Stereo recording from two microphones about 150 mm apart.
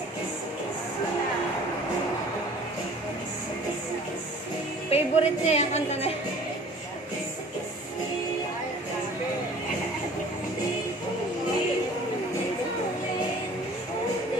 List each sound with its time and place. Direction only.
4.9 s a woman's voice: 45° left (ahead or behind)